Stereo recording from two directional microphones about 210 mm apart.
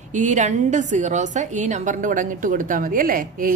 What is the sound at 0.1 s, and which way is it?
A woman's voice, 35° right (ahead or behind).